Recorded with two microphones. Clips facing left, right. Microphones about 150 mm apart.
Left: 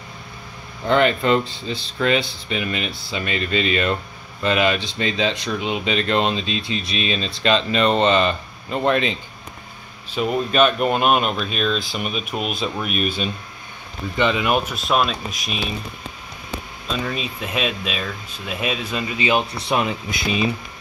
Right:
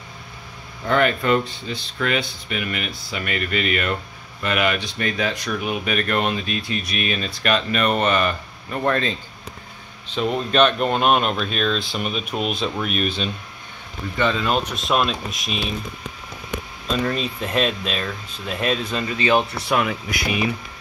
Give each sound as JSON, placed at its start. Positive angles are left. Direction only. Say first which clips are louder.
{"t": 0.8, "sound": "speech", "louder": "left 2 dB", "side_deg": 25}
{"t": 10.0, "sound": "speech", "louder": "left 1 dB", "side_deg": 5}
{"t": 17.1, "sound": "speech", "louder": "right 3 dB", "side_deg": 5}